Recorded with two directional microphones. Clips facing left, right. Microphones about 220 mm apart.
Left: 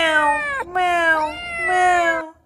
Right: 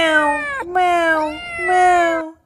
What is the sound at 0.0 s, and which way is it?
Cat, 45° right (ahead or behind).